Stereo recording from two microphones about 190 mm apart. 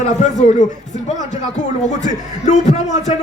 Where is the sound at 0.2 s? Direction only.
40° left (ahead or behind).